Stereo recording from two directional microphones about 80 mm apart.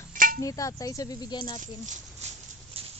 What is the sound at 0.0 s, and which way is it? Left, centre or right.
Cutlery, left.